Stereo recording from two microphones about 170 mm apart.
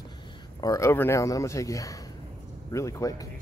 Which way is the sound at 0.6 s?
20° left (ahead or behind).